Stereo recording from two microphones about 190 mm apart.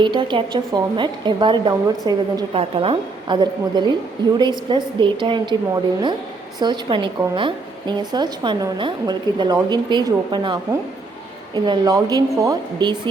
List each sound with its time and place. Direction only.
0.0 s a woman's voice: 25° right (ahead or behind)